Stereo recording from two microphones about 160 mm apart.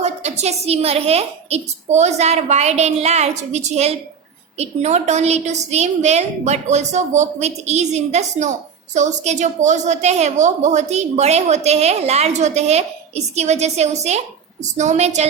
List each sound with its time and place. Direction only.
0.0 s a woman's voice: 45° right (ahead or behind)